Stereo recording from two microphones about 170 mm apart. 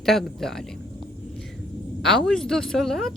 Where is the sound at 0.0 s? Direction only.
Centre (ahead or behind).